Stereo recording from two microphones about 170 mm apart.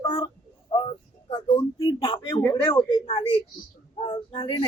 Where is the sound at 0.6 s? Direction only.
25° left (ahead or behind).